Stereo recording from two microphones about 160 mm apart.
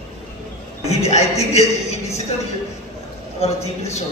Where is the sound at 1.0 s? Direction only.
45° left (ahead or behind).